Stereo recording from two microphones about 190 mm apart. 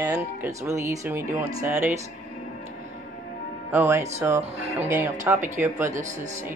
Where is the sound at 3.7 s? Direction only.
15° right (ahead or behind).